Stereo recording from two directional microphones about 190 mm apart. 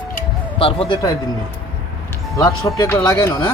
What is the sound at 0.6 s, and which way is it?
Speech, 30° left (ahead or behind).